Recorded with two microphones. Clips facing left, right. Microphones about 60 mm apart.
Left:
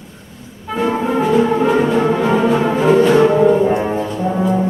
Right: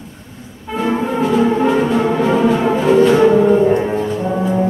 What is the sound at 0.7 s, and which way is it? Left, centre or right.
Brass instrument, centre.